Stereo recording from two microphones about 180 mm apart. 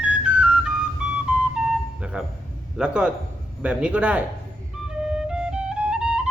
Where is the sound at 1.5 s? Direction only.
5° right (ahead or behind).